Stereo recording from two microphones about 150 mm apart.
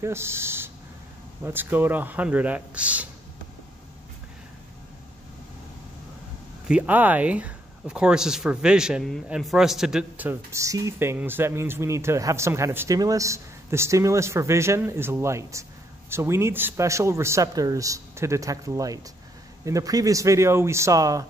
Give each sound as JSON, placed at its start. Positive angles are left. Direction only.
{"t": 0.0, "sound": "speech", "side_deg": -15}
{"t": 6.7, "sound": "speech", "side_deg": -10}